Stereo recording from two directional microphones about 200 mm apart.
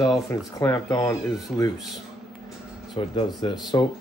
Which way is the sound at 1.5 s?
Centre (ahead or behind).